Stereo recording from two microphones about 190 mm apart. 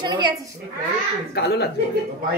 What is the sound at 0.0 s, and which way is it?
Speech, 20° right (ahead or behind).